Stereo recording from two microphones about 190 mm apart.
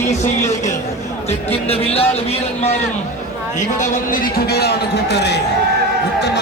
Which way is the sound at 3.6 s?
45° left (ahead or behind).